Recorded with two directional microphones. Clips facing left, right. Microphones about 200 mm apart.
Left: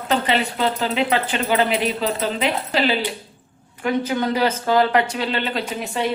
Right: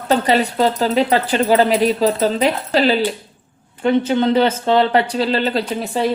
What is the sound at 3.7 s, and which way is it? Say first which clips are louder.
Speech: right 6 dB; 25° right (ahead or behind).